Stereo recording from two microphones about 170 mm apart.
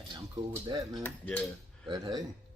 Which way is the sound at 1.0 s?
10° left (ahead or behind).